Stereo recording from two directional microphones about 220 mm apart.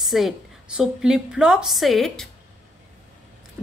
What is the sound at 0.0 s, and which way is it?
A woman's voice, centre (ahead or behind).